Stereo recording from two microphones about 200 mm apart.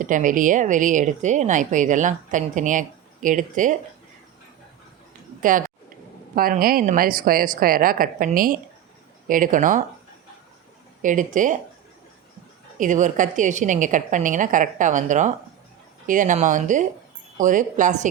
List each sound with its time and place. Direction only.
0.0 s speech: 40° right (ahead or behind)
5.4 s a woman's voice: 40° right (ahead or behind)
11.0 s speech: 40° right (ahead or behind)
12.8 s speech: 40° right (ahead or behind)